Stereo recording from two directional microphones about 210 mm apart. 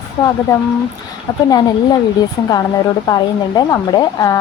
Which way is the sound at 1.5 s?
20° left (ahead or behind).